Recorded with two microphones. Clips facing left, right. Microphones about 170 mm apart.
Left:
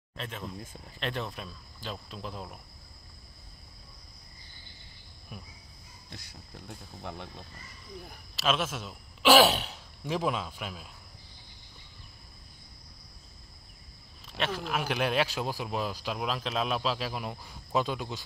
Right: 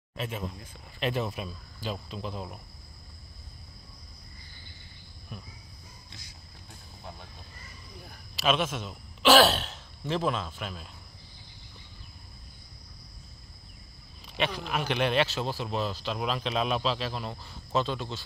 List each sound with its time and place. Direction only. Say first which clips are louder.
0.1 s speech: right 4 dB; 10° right (ahead or behind)
5.3 s speech: right 2 dB; 5° left (ahead or behind)
7.0 s speech: left 4 dB; 65° left (ahead or behind)
8.4 s speech: right 2 dB; centre (ahead or behind)
14.2 s speech: right 1 dB; centre (ahead or behind)